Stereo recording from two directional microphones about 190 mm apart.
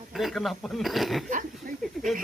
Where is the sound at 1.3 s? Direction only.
45° right (ahead or behind).